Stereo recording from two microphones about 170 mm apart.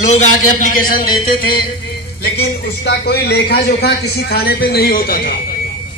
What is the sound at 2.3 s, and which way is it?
A man's voice, 75° left (ahead or behind).